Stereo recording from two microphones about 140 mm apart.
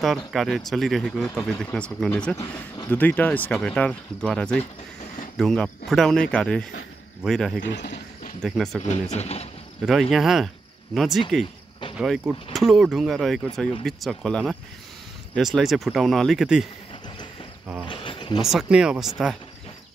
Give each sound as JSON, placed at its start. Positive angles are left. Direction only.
{"t": 0.3, "sound": "speech", "side_deg": 0}
{"t": 9.1, "sound": "speech", "side_deg": 50}
{"t": 9.8, "sound": "speech", "side_deg": 0}
{"t": 17.8, "sound": "a sound", "side_deg": 40}
{"t": 18.4, "sound": "speech", "side_deg": -5}